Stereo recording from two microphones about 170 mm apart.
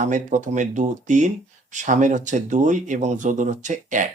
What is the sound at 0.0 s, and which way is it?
Speech, 45° right (ahead or behind).